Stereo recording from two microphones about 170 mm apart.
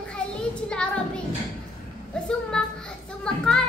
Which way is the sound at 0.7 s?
5° left (ahead or behind).